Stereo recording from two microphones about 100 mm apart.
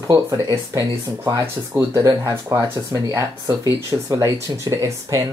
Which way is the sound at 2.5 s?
20° right (ahead or behind).